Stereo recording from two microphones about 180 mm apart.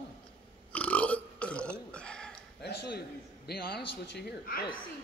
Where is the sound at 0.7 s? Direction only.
5° left (ahead or behind).